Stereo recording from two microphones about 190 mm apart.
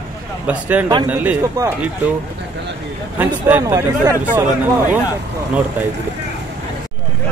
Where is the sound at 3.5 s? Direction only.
15° right (ahead or behind).